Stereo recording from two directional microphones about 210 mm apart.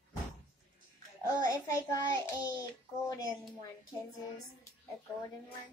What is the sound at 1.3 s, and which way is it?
Child singing, 15° left (ahead or behind).